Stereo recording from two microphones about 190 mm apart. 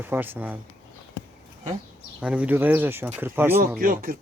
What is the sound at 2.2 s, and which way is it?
Speech, 5° right (ahead or behind).